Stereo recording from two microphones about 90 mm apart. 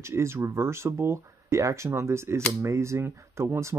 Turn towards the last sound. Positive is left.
turn(degrees=-30)  # may be behind; listen again after turning